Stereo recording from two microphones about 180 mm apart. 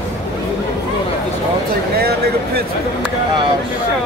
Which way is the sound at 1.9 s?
60° right (ahead or behind).